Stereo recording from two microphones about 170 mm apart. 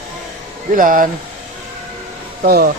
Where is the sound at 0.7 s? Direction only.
50° right (ahead or behind).